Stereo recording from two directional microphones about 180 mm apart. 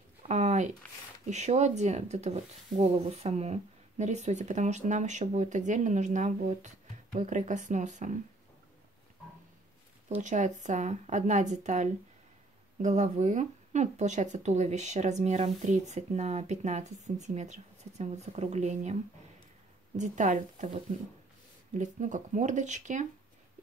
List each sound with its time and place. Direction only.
0.2 s a sound: 40° right (ahead or behind)
1.2 s speech: 40° right (ahead or behind)
10.0 s speech: 40° right (ahead or behind)
20.0 s speech: 45° right (ahead or behind)